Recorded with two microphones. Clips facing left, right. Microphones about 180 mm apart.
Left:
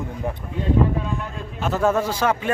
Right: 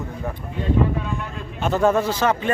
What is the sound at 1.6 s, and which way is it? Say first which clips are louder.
Speech: right 2 dB; 5° left (ahead or behind).